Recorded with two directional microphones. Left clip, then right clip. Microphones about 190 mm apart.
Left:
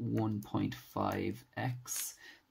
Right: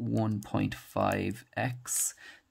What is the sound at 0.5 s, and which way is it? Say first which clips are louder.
Speech: right 4 dB; 50° right (ahead or behind).